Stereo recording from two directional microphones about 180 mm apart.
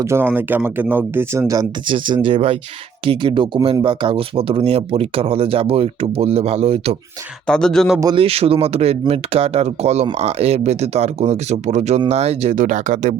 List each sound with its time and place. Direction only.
0.0 s speech: 15° right (ahead or behind); by 6.9 s 35° right (ahead or behind)
7.4 s speech: 5° left (ahead or behind)
8.0 s speech: 30° right (ahead or behind)